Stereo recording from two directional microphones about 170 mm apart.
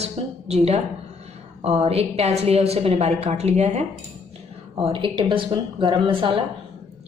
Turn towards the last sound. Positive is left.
turn(degrees=-30)  # may be behind; listen again after turning